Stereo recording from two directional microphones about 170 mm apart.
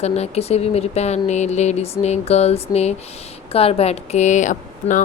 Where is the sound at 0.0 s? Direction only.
40° left (ahead or behind).